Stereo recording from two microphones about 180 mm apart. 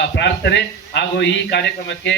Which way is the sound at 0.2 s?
75° left (ahead or behind).